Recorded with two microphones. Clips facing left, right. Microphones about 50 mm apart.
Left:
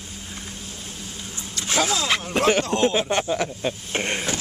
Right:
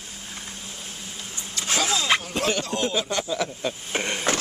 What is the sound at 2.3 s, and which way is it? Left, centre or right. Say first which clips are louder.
Speech: left 5 dB; left.